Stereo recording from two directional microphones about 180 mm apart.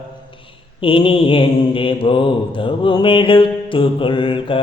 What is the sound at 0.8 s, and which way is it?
Mantra, 30° left (ahead or behind).